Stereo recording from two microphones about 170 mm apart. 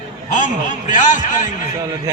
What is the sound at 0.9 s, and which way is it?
Speech, 50° left (ahead or behind).